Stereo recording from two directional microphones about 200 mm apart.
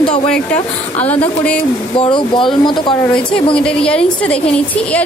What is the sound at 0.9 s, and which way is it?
Speech, 10° left (ahead or behind).